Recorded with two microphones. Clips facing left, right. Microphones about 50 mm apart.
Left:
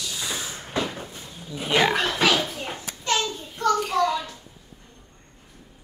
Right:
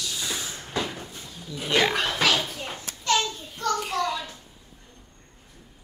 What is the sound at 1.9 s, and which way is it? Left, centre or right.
Speech, centre.